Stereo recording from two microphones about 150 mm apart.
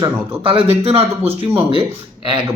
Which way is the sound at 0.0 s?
35° right (ahead or behind).